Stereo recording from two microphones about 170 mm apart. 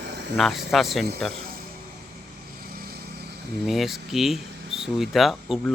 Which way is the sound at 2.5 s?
60° right (ahead or behind).